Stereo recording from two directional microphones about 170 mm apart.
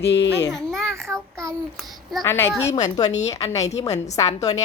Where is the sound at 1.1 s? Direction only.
15° right (ahead or behind).